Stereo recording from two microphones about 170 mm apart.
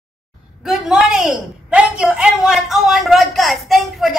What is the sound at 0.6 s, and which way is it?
A woman's voice, centre (ahead or behind).